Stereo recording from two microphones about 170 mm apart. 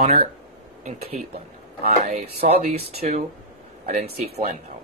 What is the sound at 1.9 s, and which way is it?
Speech, 40° right (ahead or behind).